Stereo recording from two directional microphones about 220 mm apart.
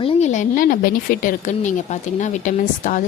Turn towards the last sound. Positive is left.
turn(degrees=35)  # may be behind; listen again after turning